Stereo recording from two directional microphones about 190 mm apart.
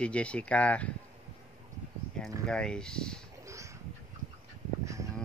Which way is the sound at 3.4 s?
15° right (ahead or behind).